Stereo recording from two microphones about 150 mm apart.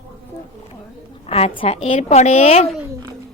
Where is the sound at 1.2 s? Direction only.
40° left (ahead or behind).